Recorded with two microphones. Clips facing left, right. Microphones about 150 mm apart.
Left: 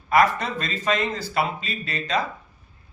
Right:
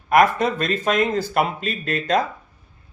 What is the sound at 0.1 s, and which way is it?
Speech, 50° right (ahead or behind).